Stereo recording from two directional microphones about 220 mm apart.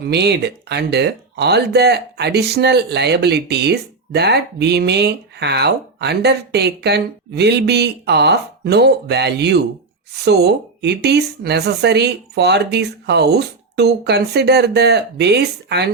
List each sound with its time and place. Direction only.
0.0 s speech: 50° right (ahead or behind)